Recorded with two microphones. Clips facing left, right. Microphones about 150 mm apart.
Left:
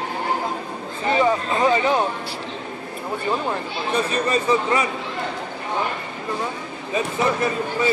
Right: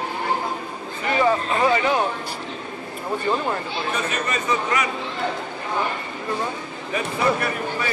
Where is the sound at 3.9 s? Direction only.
30° left (ahead or behind).